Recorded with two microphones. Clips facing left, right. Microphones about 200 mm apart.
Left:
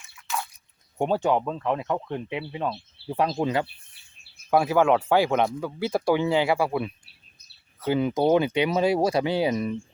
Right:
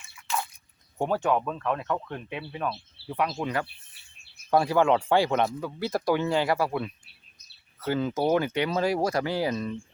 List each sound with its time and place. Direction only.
0.2 s a sound: centre (ahead or behind)
0.9 s speech: 25° left (ahead or behind)
4.5 s speech: 10° left (ahead or behind)